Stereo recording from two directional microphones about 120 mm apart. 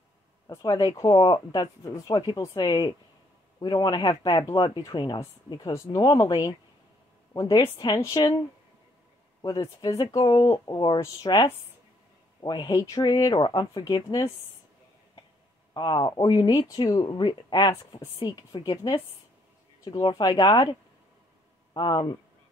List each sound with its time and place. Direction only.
0.7 s speech: 30° left (ahead or behind)
9.4 s speech: 35° left (ahead or behind)
15.7 s speech: 40° left (ahead or behind)
21.7 s speech: 35° left (ahead or behind)